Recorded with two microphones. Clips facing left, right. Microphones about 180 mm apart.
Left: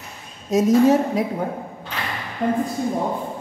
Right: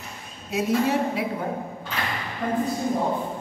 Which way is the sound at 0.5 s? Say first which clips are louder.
Left 8 dB; 45° left (ahead or behind).